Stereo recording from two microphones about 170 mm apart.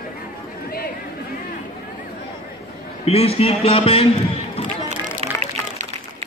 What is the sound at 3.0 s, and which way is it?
A man's voice, 35° left (ahead or behind).